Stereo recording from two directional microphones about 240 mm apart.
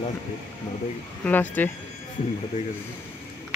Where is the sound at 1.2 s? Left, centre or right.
Centre.